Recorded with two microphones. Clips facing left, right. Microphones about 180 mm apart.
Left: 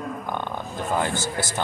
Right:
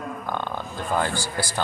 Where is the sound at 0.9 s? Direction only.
20° left (ahead or behind).